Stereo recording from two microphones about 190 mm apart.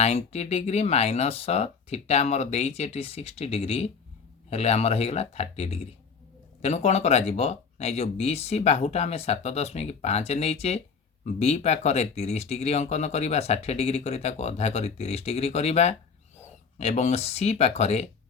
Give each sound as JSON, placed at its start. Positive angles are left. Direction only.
{"t": 0.0, "sound": "speech", "side_deg": 35}